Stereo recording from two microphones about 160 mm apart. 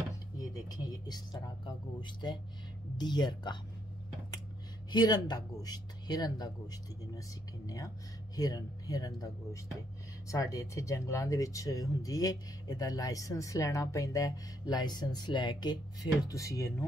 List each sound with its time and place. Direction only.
0.7 s speech: 25° left (ahead or behind)
4.9 s speech: 25° left (ahead or behind)